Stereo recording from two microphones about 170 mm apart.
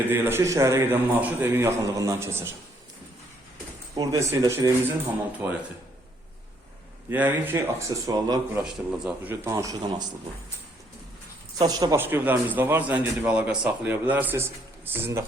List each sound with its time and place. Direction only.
0.1 s a man's voice: 15° right (ahead or behind)
3.9 s a man's voice: 20° right (ahead or behind)
7.1 s a man's voice: 10° right (ahead or behind)
8.6 s a man's voice: 10° right (ahead or behind)
11.5 s a man's voice: 25° right (ahead or behind)